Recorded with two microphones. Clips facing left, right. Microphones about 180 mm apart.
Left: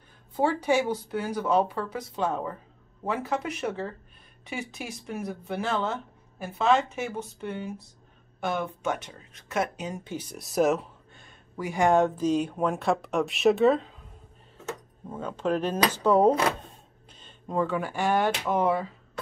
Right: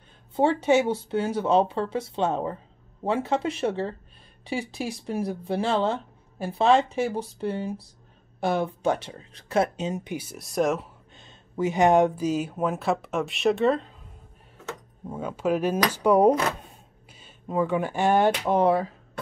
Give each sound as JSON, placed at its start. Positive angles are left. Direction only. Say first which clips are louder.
{"t": 0.4, "sound": "speech", "louder": "right 4 dB", "side_deg": -25}
{"t": 10.1, "sound": "speech", "louder": "left 3 dB", "side_deg": -5}
{"t": 11.1, "sound": "speech", "louder": "right 8 dB", "side_deg": -25}
{"t": 15.0, "sound": "speech", "louder": "right 2 dB", "side_deg": -10}
{"t": 17.1, "sound": "a sound", "louder": "right 2 dB", "side_deg": -5}
{"t": 17.7, "sound": "speech", "louder": "right 6 dB", "side_deg": -20}